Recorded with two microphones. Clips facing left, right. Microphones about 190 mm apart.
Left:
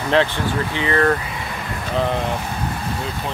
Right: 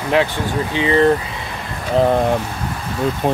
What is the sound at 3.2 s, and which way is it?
Speech, 55° right (ahead or behind).